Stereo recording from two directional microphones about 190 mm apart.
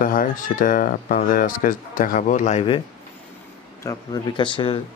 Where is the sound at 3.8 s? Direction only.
20° left (ahead or behind).